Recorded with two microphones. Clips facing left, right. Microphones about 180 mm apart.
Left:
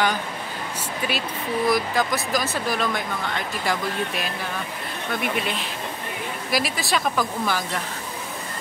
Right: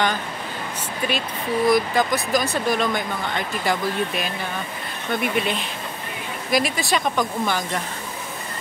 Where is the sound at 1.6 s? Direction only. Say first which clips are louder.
Right 4 dB; centre (ahead or behind).